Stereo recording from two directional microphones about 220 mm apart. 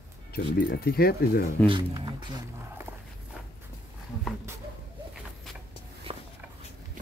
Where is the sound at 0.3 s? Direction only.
45° left (ahead or behind).